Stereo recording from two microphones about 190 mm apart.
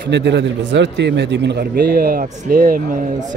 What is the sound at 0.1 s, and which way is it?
Speech, 65° right (ahead or behind).